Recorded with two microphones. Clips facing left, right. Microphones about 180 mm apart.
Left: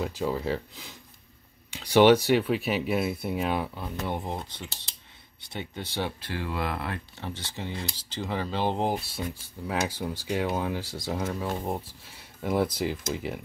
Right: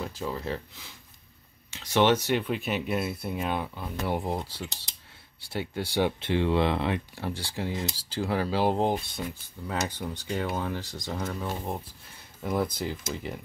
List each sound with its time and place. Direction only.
0.0 s speech: 10° left (ahead or behind); by 6.1 s 10° right (ahead or behind)
6.2 s speech: 25° right (ahead or behind)
7.2 s speech: 10° right (ahead or behind); by 13.4 s 5° left (ahead or behind)